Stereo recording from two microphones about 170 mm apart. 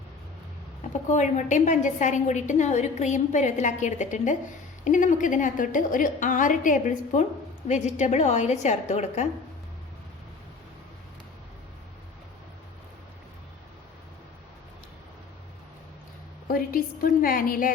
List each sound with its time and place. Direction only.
1.0 s a woman's voice: 45° left (ahead or behind)
16.5 s a woman's voice: 55° left (ahead or behind)